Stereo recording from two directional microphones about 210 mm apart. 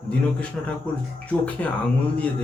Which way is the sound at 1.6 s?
5° left (ahead or behind).